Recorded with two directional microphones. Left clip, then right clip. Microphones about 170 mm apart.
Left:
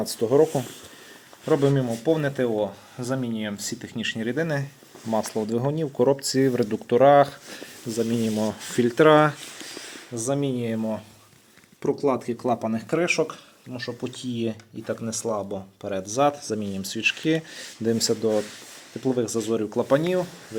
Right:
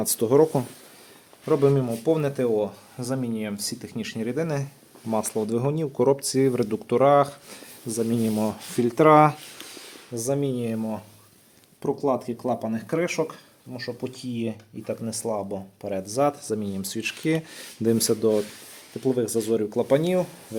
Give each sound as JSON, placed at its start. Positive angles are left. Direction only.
{"t": 0.0, "sound": "speech", "side_deg": -30}
{"t": 1.5, "sound": "speech", "side_deg": -5}
{"t": 16.0, "sound": "speech", "side_deg": -10}